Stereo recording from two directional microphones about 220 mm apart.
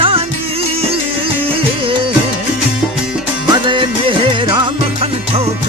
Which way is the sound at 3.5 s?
20° right (ahead or behind).